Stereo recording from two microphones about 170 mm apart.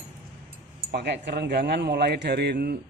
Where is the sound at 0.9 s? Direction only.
80° right.